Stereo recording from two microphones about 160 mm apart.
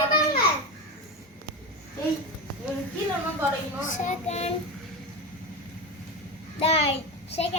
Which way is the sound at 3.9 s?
50° left (ahead or behind).